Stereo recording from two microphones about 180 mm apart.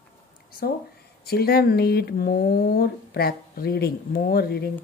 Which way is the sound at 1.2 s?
60° left (ahead or behind).